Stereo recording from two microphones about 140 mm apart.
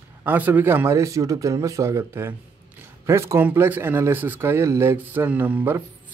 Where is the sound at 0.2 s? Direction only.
15° right (ahead or behind).